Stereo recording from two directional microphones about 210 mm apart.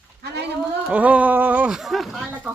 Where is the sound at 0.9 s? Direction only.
5° right (ahead or behind).